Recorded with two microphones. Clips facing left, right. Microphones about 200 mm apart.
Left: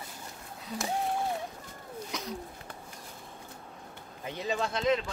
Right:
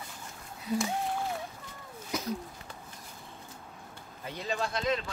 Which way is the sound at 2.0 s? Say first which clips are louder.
Right 6 dB; 5° right (ahead or behind).